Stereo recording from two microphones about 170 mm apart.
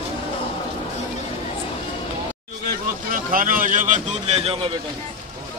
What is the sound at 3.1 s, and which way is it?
Speech, 55° right (ahead or behind).